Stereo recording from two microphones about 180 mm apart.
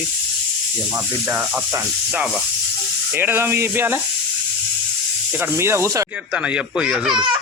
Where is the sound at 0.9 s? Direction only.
10° right (ahead or behind).